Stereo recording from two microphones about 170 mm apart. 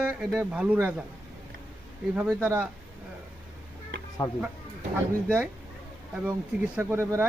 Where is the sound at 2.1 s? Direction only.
10° right (ahead or behind).